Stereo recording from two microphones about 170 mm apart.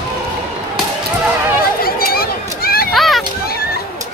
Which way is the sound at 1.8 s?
60° left (ahead or behind).